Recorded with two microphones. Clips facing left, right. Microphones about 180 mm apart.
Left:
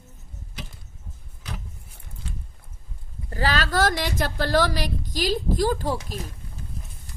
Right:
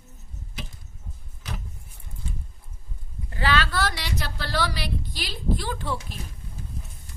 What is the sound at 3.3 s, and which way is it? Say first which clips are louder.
A woman's voice: left 1 dB; 40° left (ahead or behind).